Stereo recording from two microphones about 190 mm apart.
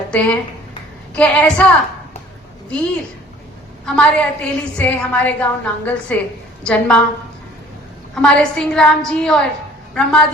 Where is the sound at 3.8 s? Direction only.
5° left (ahead or behind).